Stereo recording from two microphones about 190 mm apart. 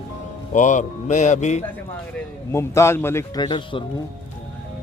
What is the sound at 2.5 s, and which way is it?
Speech, 15° left (ahead or behind).